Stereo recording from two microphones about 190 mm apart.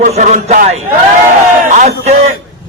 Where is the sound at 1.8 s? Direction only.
40° right (ahead or behind).